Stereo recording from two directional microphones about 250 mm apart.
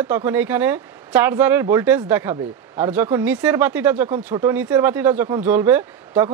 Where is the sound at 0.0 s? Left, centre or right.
Centre.